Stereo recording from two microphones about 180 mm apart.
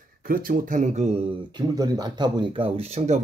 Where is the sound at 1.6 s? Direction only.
20° right (ahead or behind); by 3.2 s 40° right (ahead or behind).